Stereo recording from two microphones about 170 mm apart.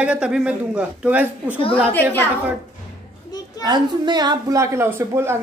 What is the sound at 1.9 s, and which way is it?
Speech, 10° left (ahead or behind).